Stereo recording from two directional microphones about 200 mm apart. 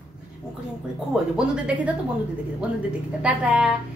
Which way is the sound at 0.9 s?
5° right (ahead or behind).